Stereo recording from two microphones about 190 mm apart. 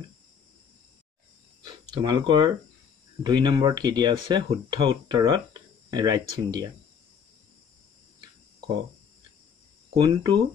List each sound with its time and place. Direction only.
1.6 s a sound: 20° right (ahead or behind)
3.3 s speech: 20° right (ahead or behind)
9.9 s speech: 20° right (ahead or behind)